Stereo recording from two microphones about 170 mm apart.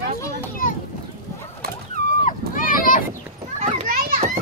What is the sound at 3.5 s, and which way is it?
Children playing, 45° right (ahead or behind).